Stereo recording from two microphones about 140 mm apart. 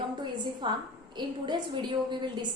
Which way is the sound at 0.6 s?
35° right (ahead or behind).